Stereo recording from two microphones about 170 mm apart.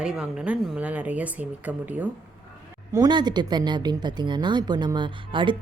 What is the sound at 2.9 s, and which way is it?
Speech, 25° right (ahead or behind).